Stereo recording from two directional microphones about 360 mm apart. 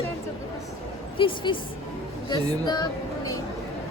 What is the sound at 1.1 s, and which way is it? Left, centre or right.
Speech, centre.